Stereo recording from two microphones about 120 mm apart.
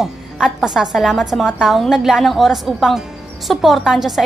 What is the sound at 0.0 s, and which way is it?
A woman's voice, 5° right (ahead or behind).